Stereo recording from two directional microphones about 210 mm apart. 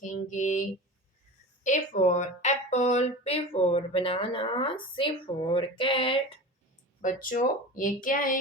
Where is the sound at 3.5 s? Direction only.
30° left (ahead or behind).